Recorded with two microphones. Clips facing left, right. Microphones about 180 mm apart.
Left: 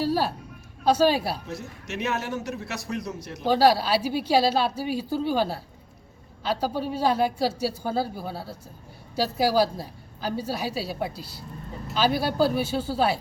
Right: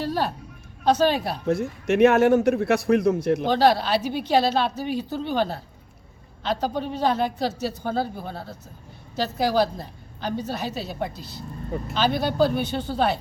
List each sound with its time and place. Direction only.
0.0 s a woman's voice: 5° left (ahead or behind)
1.5 s a man's voice: 55° right (ahead or behind)
3.4 s a woman's voice: 10° left (ahead or behind)